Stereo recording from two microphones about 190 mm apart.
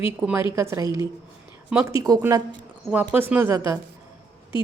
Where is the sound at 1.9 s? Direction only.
20° right (ahead or behind).